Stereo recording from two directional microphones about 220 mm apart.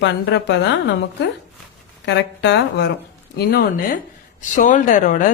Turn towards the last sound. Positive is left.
turn(degrees=35)  # may be behind; listen again after turning